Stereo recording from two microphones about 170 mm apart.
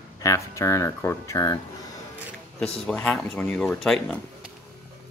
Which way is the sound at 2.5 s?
5° left (ahead or behind).